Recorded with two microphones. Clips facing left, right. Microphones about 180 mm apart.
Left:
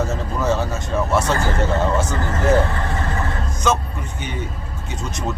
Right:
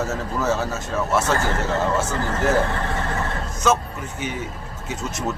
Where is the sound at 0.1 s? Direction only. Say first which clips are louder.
Left 2 dB; 5° right (ahead or behind).